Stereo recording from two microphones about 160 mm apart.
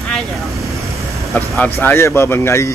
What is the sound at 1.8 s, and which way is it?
Speech, 15° left (ahead or behind).